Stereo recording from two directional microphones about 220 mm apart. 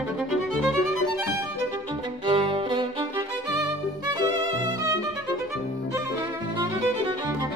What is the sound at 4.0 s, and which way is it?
Music, 20° right (ahead or behind).